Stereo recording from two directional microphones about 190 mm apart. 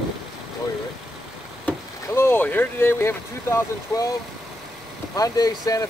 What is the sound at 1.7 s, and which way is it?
Vehicle, 10° left (ahead or behind).